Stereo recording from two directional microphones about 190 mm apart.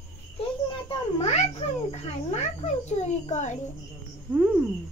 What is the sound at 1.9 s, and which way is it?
Speech, 35° left (ahead or behind).